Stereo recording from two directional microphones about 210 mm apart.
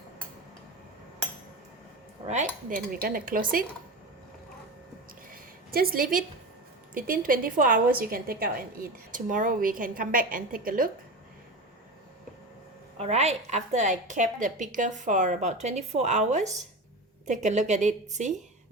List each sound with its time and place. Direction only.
2.2 s speech: 35° right (ahead or behind)
5.3 s a sound: 45° right (ahead or behind)
6.9 s a woman's voice: 40° right (ahead or behind)
13.0 s a woman's voice: 30° right (ahead or behind)